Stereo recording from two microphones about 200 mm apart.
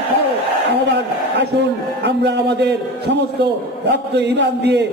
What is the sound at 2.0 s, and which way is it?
A man's voice, 55° right (ahead or behind).